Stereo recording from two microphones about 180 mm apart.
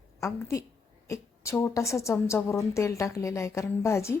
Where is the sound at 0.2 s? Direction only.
15° left (ahead or behind).